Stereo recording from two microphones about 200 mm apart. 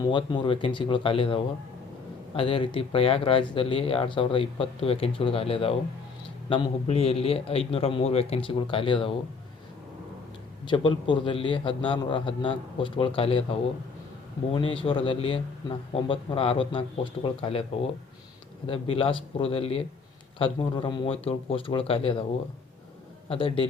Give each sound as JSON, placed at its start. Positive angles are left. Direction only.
{"t": 0.0, "sound": "speech", "side_deg": 25}
{"t": 10.7, "sound": "speech", "side_deg": 25}
{"t": 23.3, "sound": "speech", "side_deg": 25}